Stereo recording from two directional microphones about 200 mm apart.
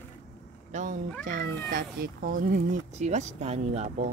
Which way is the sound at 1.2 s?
40° right (ahead or behind).